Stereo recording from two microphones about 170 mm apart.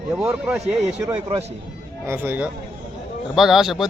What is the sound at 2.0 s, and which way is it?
A man's voice, 10° right (ahead or behind).